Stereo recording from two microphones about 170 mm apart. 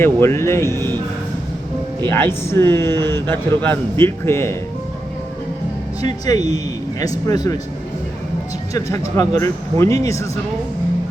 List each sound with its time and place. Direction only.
0.0 s speech: 15° left (ahead or behind)
2.0 s speech: 10° left (ahead or behind)
6.2 s speech: 20° left (ahead or behind)
8.7 s speech: 20° left (ahead or behind)